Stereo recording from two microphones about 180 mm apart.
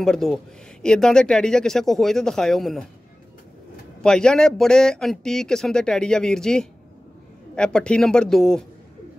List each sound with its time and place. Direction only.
0.0 s speech: centre (ahead or behind)
4.0 s speech: 5° left (ahead or behind)